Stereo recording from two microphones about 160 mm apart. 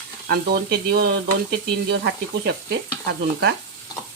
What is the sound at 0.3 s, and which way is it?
Speech, 75° right (ahead or behind).